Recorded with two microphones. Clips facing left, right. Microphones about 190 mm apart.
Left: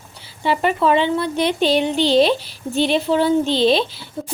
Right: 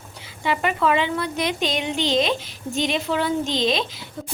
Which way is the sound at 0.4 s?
30° left (ahead or behind).